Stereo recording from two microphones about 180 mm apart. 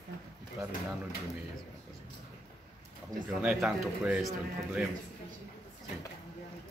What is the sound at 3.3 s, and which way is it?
Speech, centre (ahead or behind).